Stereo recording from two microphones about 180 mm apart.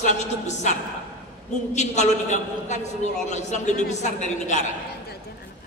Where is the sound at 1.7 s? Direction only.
40° left (ahead or behind).